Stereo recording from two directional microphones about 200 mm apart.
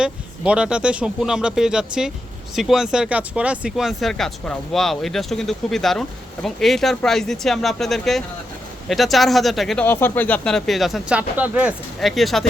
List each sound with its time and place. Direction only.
0.0 s speech: 5° right (ahead or behind)